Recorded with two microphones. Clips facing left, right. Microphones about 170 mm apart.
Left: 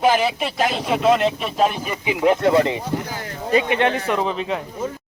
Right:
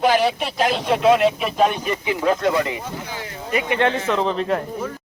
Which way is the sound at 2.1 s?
20° left (ahead or behind).